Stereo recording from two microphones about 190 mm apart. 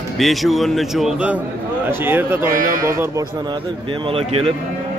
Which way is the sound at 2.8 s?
15° right (ahead or behind).